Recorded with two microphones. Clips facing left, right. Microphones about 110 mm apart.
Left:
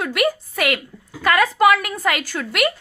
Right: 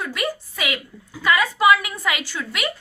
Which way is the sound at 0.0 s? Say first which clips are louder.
Left 6 dB; 70° left (ahead or behind).